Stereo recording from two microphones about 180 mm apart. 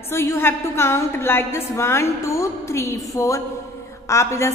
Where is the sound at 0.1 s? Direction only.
15° left (ahead or behind).